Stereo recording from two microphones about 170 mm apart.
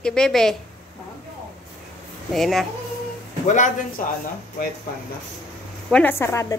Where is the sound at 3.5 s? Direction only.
50° left (ahead or behind).